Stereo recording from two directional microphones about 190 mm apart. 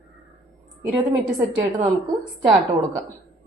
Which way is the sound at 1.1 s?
25° right (ahead or behind).